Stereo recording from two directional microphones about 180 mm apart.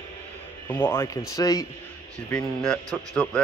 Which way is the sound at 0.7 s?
15° left (ahead or behind).